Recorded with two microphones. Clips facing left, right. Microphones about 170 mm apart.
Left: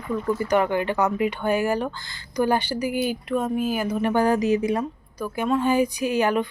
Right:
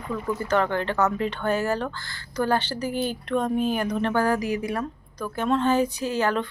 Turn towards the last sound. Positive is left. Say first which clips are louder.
# left 3 dB
turn(degrees=15)  # may be behind; listen again after turning